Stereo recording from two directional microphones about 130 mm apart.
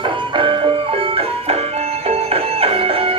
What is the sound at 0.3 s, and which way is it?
Music, 40° right (ahead or behind).